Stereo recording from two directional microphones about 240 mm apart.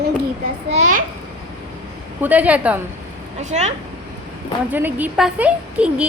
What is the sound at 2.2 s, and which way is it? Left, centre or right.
Speech, centre.